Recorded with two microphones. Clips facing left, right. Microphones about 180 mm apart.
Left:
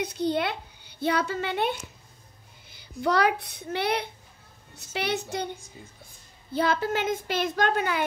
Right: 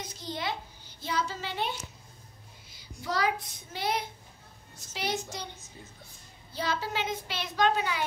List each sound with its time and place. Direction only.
0.0 s a child's voice: 65° left (ahead or behind)
6.5 s a woman's voice: 55° left (ahead or behind)